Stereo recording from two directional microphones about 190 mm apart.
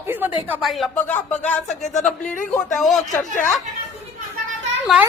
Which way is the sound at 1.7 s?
40° left (ahead or behind).